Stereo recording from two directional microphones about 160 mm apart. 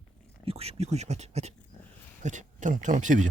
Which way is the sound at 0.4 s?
40° right (ahead or behind).